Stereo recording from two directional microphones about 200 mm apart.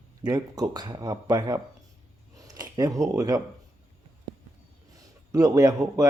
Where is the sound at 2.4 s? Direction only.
20° right (ahead or behind).